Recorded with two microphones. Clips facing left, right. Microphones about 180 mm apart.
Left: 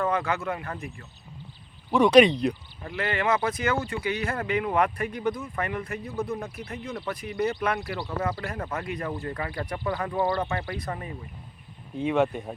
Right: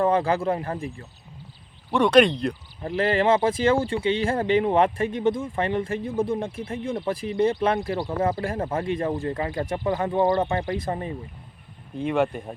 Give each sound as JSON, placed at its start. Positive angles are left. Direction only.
{"t": 0.0, "sound": "speech", "side_deg": -30}
{"t": 1.9, "sound": "speech", "side_deg": 5}
{"t": 2.8, "sound": "speech", "side_deg": -35}
{"t": 11.9, "sound": "speech", "side_deg": 0}